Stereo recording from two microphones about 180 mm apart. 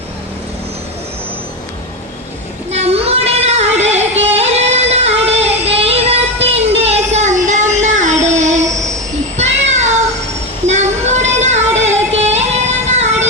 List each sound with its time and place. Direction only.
2.7 s singing: 35° right (ahead or behind)
9.4 s a sound: 40° right (ahead or behind)
10.7 s child singing: 40° right (ahead or behind)